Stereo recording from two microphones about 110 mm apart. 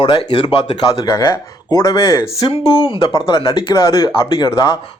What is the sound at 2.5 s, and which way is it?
Speech, 55° left (ahead or behind).